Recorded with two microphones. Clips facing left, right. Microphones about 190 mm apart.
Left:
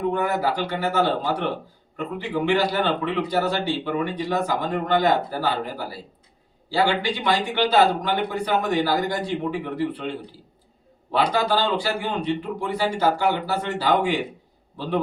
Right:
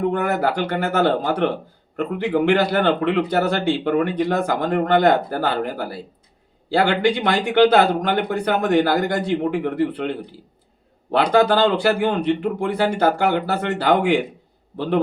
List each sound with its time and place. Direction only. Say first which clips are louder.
0.1 s speech: right 3 dB; 60° right (ahead or behind)